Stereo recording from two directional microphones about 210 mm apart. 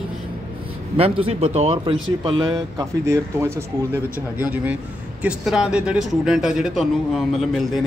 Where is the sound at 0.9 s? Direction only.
25° right (ahead or behind).